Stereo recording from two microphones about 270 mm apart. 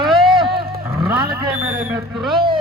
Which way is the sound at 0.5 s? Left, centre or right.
Right.